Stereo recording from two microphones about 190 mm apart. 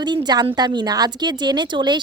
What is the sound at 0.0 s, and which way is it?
A woman's voice, 25° right (ahead or behind).